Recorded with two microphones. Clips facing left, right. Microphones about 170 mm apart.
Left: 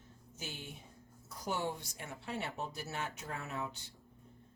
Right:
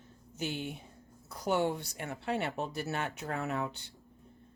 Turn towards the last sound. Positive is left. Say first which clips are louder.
# right 7 dB
turn(degrees=-65)  # may be behind; listen again after turning